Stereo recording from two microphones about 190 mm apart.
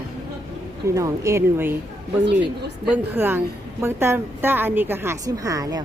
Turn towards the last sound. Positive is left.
turn(degrees=-20)  # may be behind; listen again after turning